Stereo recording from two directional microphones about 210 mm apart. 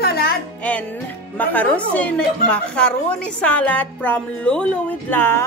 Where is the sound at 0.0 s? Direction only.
50° left (ahead or behind).